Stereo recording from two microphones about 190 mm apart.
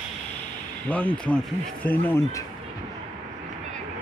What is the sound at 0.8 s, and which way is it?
Speech, 10° left (ahead or behind).